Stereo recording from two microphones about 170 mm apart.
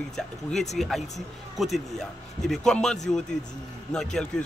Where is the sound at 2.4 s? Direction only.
Centre (ahead or behind).